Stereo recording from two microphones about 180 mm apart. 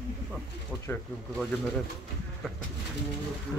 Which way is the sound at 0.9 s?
5° left (ahead or behind).